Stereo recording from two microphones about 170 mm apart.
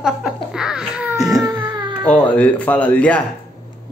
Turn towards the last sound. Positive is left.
turn(degrees=10)  # may be behind; listen again after turning